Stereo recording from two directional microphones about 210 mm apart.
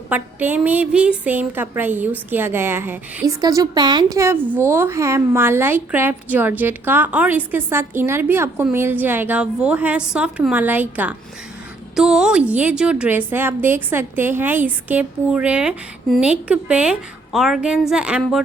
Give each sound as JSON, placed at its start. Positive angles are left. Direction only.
{"t": 0.1, "sound": "a woman's voice", "side_deg": -10}